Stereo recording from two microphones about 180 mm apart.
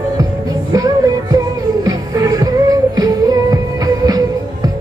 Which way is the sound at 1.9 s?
20° right (ahead or behind).